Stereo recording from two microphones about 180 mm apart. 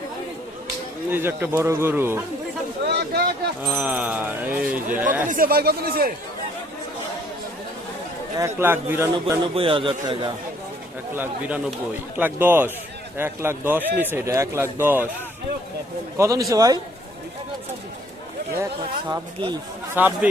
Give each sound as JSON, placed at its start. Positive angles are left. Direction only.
{"t": 1.1, "sound": "a man's voice", "side_deg": -10}
{"t": 2.9, "sound": "a sound", "side_deg": -65}
{"t": 3.7, "sound": "a man's voice", "side_deg": -10}
{"t": 5.3, "sound": "speech", "side_deg": -55}
{"t": 8.4, "sound": "a man's voice", "side_deg": -15}
{"t": 9.6, "sound": "a man's voice", "side_deg": -30}
{"t": 11.1, "sound": "a man's voice", "side_deg": -10}
{"t": 16.1, "sound": "a man's voice", "side_deg": -20}
{"t": 18.6, "sound": "a man's voice", "side_deg": -15}
{"t": 19.9, "sound": "a man's voice", "side_deg": -10}